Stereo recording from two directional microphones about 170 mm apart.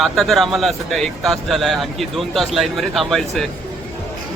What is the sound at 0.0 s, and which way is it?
Speech, centre (ahead or behind).